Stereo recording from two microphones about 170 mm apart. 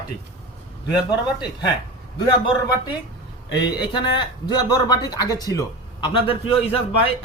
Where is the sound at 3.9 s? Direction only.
30° left (ahead or behind).